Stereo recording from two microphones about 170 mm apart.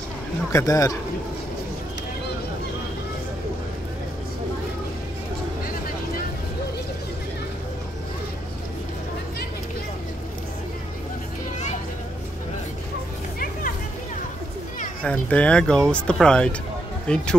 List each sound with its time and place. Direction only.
0.5 s speech: 20° left (ahead or behind)
15.0 s speech: 5° left (ahead or behind)